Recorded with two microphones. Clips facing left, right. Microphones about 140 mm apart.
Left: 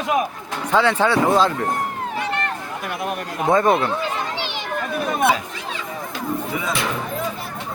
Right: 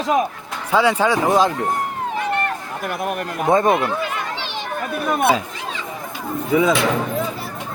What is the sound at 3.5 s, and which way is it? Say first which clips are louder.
Speech: right 1 dB; 20° right (ahead or behind).